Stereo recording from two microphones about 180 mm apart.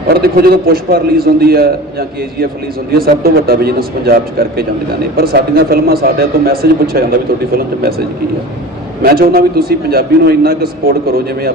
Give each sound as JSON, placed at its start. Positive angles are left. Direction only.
{"t": 0.1, "sound": "speech", "side_deg": -60}
{"t": 9.0, "sound": "speech", "side_deg": -55}